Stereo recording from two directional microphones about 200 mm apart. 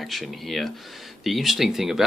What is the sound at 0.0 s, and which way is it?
Speech, centre (ahead or behind).